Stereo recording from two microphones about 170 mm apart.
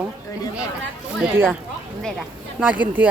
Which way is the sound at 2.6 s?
10° right (ahead or behind).